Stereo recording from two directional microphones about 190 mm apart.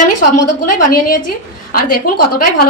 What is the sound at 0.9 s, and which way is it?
A woman's voice, 50° left (ahead or behind).